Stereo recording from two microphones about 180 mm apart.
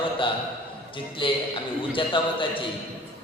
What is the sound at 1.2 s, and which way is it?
A man's voice, 25° left (ahead or behind).